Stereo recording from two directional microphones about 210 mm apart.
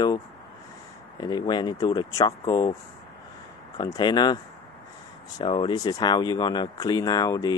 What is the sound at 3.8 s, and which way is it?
Speech, 20° left (ahead or behind).